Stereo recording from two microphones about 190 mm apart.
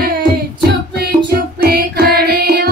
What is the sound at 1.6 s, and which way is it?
Music, 55° right (ahead or behind).